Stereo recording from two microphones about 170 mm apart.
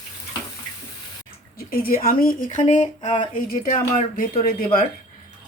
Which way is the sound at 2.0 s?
55° left (ahead or behind).